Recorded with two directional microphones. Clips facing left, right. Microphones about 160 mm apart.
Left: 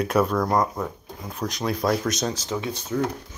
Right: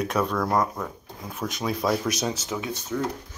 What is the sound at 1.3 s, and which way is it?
Speech, 5° right (ahead or behind).